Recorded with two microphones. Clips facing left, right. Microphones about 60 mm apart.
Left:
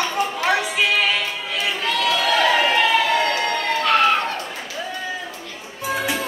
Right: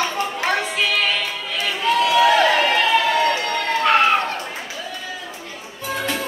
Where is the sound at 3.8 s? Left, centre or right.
Right.